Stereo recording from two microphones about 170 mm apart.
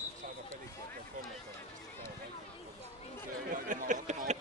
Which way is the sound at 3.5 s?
50° right (ahead or behind).